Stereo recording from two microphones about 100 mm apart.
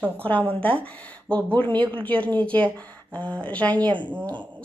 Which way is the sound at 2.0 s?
15° left (ahead or behind).